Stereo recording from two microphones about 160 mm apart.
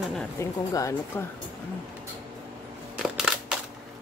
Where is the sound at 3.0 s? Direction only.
5° right (ahead or behind).